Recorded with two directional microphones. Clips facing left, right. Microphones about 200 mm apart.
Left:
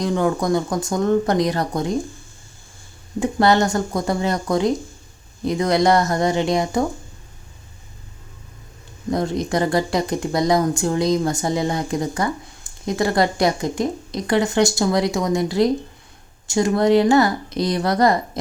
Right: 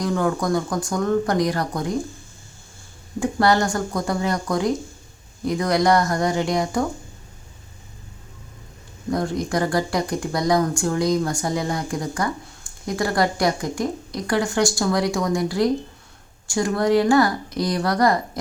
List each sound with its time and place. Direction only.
0.0 s speech: 20° left (ahead or behind)
3.2 s speech: 20° left (ahead or behind)
9.0 s speech: 20° left (ahead or behind)